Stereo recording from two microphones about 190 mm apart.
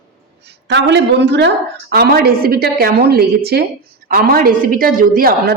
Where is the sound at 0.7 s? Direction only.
65° right (ahead or behind).